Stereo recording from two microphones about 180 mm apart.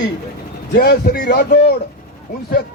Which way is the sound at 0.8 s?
55° left (ahead or behind).